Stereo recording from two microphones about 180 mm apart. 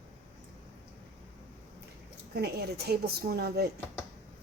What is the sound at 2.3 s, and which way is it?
A woman's voice, 60° right (ahead or behind).